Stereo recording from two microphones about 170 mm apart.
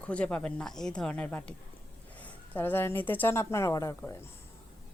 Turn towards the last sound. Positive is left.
turn(degrees=15)  # may be behind; listen again after turning